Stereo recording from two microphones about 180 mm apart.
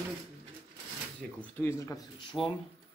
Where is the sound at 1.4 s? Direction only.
10° left (ahead or behind).